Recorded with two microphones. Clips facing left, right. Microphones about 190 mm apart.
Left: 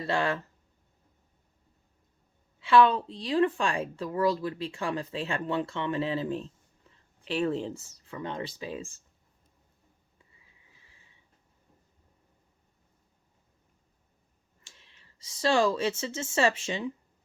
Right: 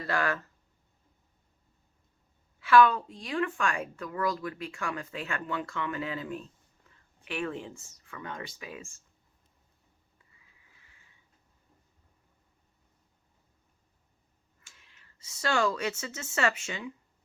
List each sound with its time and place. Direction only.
0.0 s a woman's voice: 25° left (ahead or behind)
2.6 s a woman's voice: 25° left (ahead or behind)
10.7 s a sound: 25° left (ahead or behind)
14.6 s speech: 25° left (ahead or behind)